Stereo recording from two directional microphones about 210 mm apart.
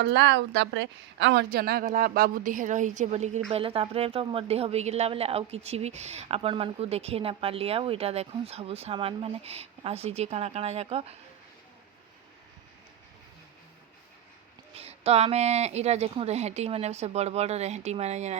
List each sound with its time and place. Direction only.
0.0 s a woman's voice: 55° right (ahead or behind); by 11.2 s 30° right (ahead or behind)
14.8 s speech: 30° right (ahead or behind)